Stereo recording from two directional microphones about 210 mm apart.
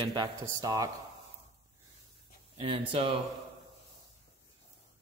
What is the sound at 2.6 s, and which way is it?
Speech, 25° right (ahead or behind).